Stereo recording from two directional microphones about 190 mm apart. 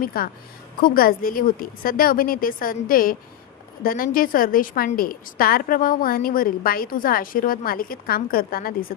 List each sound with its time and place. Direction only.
0.0 s a woman's voice: 50° left (ahead or behind)